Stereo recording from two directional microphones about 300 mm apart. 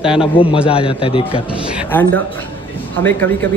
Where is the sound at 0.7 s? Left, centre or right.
Centre.